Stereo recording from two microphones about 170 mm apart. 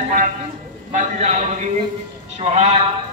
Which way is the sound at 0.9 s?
45° right (ahead or behind).